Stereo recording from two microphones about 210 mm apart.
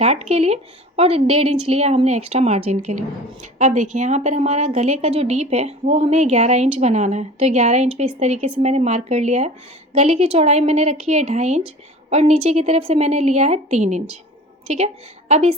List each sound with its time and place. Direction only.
0.0 s a woman's voice: 30° right (ahead or behind)
15.3 s a woman's voice: 30° right (ahead or behind)